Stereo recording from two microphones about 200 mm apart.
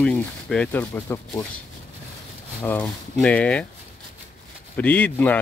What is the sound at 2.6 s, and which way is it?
Speech, 5° left (ahead or behind).